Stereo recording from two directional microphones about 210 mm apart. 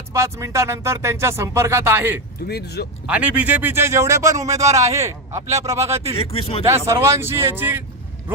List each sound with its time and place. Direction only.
0.1 s speech: 15° right (ahead or behind)
2.5 s speech: 50° left (ahead or behind)
3.1 s speech: 5° right (ahead or behind)
6.1 s speech: 25° left (ahead or behind)
6.7 s speech: 15° right (ahead or behind)